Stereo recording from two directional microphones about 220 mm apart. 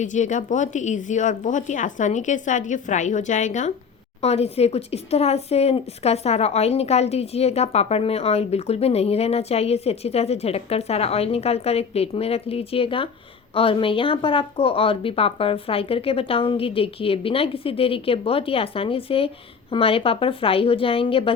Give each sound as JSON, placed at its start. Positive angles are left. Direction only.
{"t": 0.0, "sound": "speech", "side_deg": 35}